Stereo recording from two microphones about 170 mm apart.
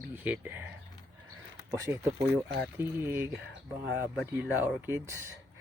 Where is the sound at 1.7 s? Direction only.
15° right (ahead or behind).